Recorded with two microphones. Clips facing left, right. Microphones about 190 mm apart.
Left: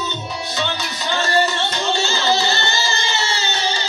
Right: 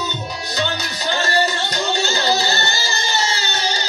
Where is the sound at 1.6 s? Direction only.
40° right (ahead or behind).